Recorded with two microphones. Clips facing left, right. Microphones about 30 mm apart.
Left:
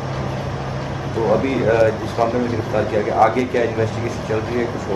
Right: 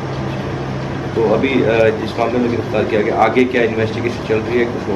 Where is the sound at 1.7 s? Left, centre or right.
Right.